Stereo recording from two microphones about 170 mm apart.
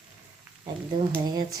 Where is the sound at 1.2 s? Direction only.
20° right (ahead or behind).